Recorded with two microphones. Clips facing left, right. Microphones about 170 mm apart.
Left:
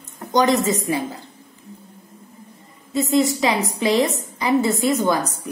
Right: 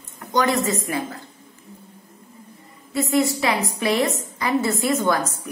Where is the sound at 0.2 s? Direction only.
20° left (ahead or behind).